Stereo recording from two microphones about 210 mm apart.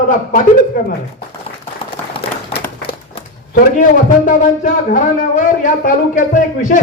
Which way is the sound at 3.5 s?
40° left (ahead or behind).